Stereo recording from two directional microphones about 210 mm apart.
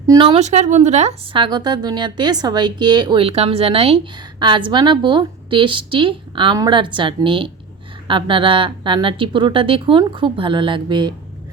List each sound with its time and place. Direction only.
0.1 s a woman's voice: 25° right (ahead or behind)